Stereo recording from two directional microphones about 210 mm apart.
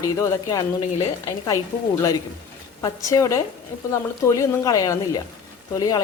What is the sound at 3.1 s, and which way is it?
Speech, 15° left (ahead or behind).